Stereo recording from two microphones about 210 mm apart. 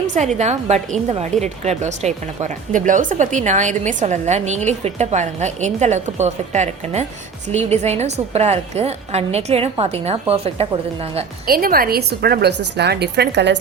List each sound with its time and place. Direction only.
0.3 s a woman's voice: 30° right (ahead or behind)
11.4 s a woman's voice: 45° right (ahead or behind)